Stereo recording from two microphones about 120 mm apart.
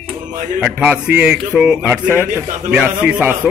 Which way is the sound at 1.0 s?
15° right (ahead or behind).